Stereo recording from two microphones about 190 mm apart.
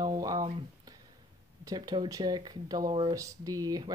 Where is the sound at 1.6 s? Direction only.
20° right (ahead or behind).